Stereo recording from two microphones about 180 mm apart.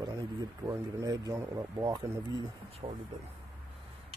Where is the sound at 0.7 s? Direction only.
20° right (ahead or behind).